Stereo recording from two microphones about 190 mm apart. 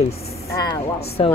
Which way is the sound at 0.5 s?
20° left (ahead or behind).